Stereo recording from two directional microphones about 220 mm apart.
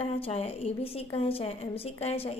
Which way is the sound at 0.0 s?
25° left (ahead or behind).